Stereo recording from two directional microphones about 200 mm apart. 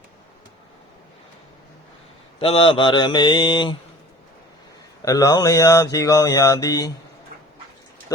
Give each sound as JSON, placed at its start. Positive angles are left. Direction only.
{"t": 2.4, "sound": "mantra", "side_deg": 30}
{"t": 5.0, "sound": "mantra", "side_deg": 15}